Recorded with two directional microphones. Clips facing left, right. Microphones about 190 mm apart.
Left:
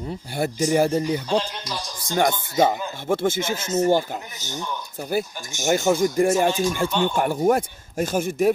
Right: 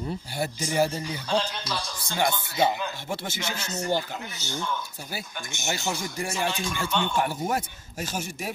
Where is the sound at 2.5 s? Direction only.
50° left (ahead or behind).